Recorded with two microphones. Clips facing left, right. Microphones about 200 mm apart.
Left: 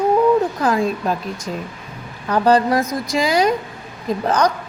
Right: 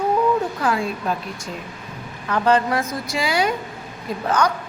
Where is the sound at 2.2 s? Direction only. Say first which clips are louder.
Left 3 dB; 35° left (ahead or behind).